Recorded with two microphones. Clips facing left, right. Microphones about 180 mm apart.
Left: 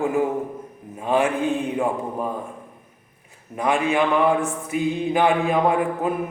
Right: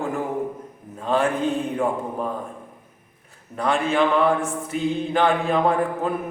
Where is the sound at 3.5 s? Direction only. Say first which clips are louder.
Left 1 dB; 15° left (ahead or behind).